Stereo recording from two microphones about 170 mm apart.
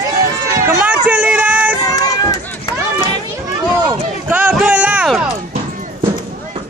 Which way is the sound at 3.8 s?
10° right (ahead or behind).